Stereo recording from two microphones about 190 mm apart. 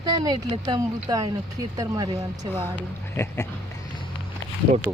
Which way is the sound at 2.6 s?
10° left (ahead or behind).